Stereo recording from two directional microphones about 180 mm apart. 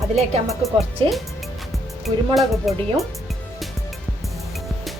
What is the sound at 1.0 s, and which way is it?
Speech, 30° right (ahead or behind).